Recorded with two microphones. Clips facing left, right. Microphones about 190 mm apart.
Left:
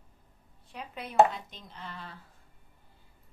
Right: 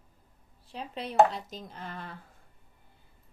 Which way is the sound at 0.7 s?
30° right (ahead or behind).